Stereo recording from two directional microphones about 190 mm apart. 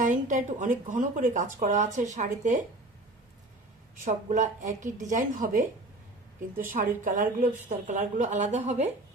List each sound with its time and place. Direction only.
0.0 s a woman's voice: 40° right (ahead or behind)
4.0 s a woman's voice: 40° right (ahead or behind)